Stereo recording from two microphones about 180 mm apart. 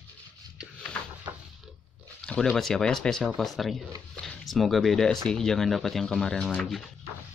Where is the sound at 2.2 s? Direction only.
5° left (ahead or behind).